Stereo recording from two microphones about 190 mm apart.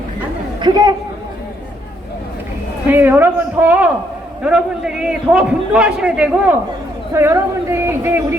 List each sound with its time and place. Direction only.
0.6 s speech: 20° right (ahead or behind)
2.9 s a man's voice: 10° right (ahead or behind)